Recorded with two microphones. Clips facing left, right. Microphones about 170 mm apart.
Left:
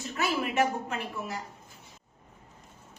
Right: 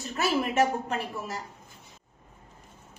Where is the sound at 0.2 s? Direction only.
40° right (ahead or behind).